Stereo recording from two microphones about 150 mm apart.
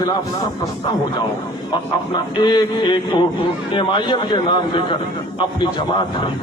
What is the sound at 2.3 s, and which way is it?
A man's voice, 30° left (ahead or behind).